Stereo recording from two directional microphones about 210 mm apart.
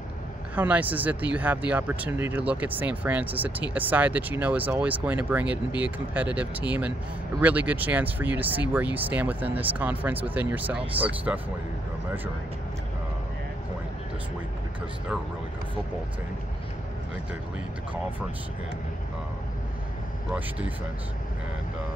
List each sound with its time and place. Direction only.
0.6 s speech: 10° right (ahead or behind)